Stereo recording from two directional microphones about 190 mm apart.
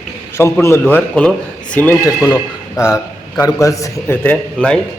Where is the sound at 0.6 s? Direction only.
10° left (ahead or behind).